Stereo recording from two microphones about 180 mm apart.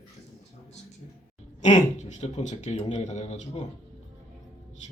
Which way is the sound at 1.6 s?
40° left (ahead or behind).